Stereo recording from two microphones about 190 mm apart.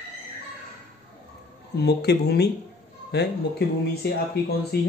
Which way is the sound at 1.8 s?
60° left (ahead or behind).